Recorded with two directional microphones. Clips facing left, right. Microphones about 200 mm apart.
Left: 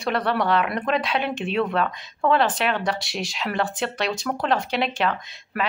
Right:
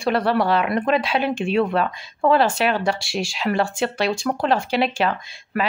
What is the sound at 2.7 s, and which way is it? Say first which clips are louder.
Speech: right 3 dB; 30° right (ahead or behind).